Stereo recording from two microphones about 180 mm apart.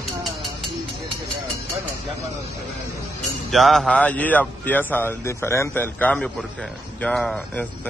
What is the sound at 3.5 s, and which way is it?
A man's voice, centre (ahead or behind).